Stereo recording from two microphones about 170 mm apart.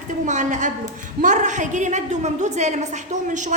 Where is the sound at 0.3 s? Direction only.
45° right (ahead or behind).